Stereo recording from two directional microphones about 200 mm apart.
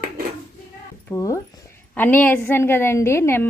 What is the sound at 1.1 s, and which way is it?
A woman's voice, 15° left (ahead or behind).